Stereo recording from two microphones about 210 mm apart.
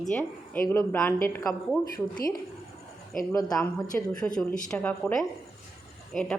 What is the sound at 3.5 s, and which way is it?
A woman's voice, centre (ahead or behind).